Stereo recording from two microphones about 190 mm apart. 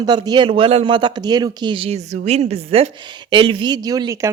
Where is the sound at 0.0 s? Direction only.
20° right (ahead or behind).